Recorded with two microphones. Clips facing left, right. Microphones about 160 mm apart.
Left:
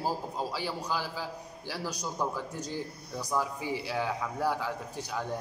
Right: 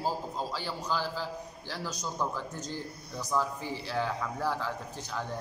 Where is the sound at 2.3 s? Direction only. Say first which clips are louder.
Left 1 dB; 10° left (ahead or behind).